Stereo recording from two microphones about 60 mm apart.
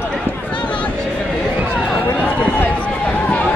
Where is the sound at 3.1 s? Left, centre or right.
Left.